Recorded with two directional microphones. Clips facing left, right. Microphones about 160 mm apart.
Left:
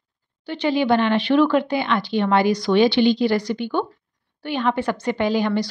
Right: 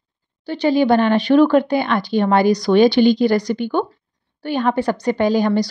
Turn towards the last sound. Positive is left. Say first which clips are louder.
# right 4 dB
turn(degrees=-40)  # may be behind; listen again after turning